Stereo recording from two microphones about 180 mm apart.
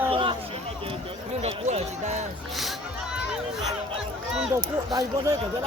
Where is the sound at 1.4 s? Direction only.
35° right (ahead or behind).